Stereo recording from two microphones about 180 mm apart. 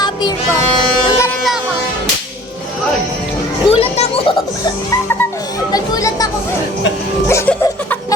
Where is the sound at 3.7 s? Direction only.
30° left (ahead or behind).